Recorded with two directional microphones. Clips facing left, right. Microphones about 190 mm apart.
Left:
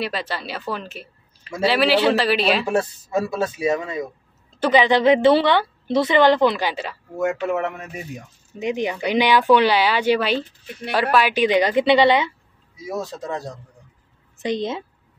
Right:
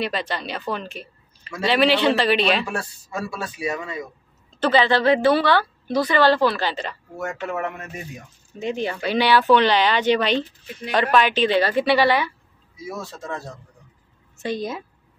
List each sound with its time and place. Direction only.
0.0 s speech: 5° left (ahead or behind)
2.7 s a woman's voice: 20° left (ahead or behind)
8.5 s a woman's voice: 15° left (ahead or behind)